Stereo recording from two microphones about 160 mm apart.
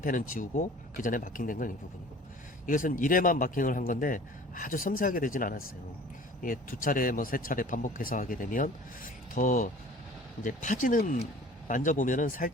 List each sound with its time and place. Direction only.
0.0 s speech: 55° left (ahead or behind)